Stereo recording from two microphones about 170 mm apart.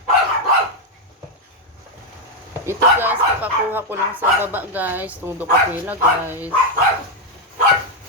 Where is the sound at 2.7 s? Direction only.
10° right (ahead or behind).